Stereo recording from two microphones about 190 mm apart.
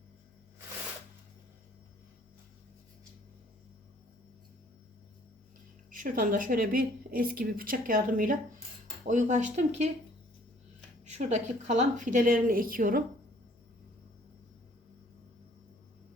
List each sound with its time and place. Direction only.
5.9 s a woman's voice: 45° right (ahead or behind)
11.0 s a woman's voice: 35° right (ahead or behind)